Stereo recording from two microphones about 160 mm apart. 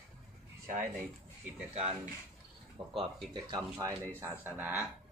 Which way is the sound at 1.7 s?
45° right (ahead or behind).